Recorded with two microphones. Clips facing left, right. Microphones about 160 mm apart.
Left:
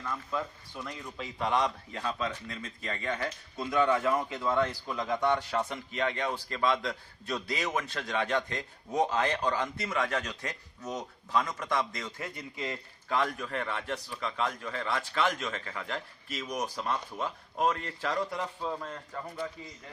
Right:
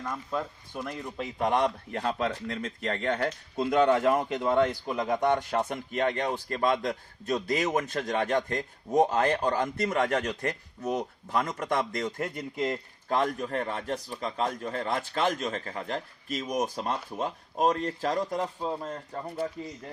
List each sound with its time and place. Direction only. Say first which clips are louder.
0.0 s speech: right 2 dB; 35° right (ahead or behind)
0.7 s a man's voice: right 5 dB; 50° right (ahead or behind)
4.4 s speech: right 5 dB; 20° right (ahead or behind)
5.6 s a man's voice: right 4 dB; 50° right (ahead or behind); by 19.2 s 30° right (ahead or behind)